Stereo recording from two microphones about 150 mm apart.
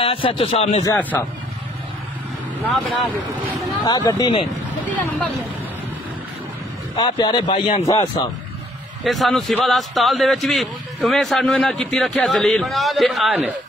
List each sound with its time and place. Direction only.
0.0 s a man's voice: 35° left (ahead or behind)
2.7 s a man's voice: centre (ahead or behind)
3.8 s speech: 25° left (ahead or behind)
4.8 s speech: 10° left (ahead or behind)
7.0 s a man's voice: 30° left (ahead or behind)
9.0 s a man's voice: centre (ahead or behind)